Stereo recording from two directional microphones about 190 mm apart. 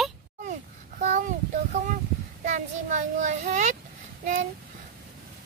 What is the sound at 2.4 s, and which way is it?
A child's voice, 40° right (ahead or behind).